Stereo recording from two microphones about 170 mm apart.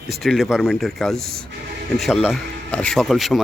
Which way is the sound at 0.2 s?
Centre (ahead or behind).